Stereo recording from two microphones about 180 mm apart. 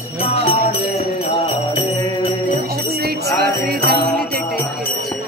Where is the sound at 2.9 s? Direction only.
60° right (ahead or behind).